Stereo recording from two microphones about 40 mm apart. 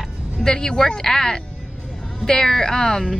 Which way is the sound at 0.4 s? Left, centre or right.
Centre.